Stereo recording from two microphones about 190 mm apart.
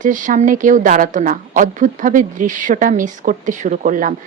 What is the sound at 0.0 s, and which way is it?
A woman's voice, 45° right (ahead or behind).